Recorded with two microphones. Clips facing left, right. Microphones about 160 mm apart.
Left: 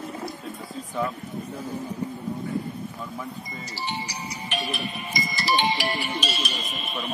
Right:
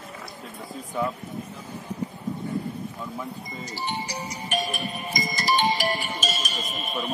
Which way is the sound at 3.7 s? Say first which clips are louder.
Right 2 dB; 50° right (ahead or behind).